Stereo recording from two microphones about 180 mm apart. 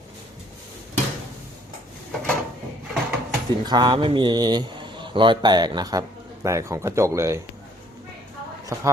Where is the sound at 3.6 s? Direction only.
25° right (ahead or behind).